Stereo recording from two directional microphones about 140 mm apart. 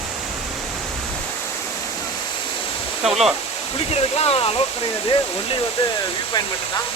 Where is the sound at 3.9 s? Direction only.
45° left (ahead or behind).